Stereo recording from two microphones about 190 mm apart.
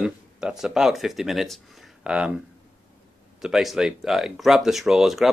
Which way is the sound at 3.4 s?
Centre (ahead or behind).